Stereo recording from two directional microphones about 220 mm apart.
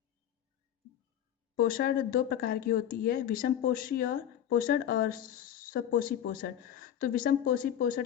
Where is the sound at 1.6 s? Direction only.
40° left (ahead or behind).